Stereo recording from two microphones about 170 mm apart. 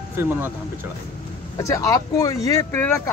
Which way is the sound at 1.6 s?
20° left (ahead or behind).